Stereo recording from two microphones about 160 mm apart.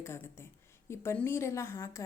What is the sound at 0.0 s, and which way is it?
A woman's voice, 15° left (ahead or behind).